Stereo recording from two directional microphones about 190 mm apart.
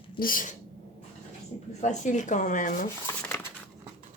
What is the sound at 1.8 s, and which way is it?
Speech, 40° left (ahead or behind).